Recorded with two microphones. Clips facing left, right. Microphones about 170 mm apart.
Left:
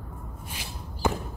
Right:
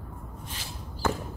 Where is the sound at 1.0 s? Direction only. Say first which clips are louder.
Left 2 dB; 15° left (ahead or behind).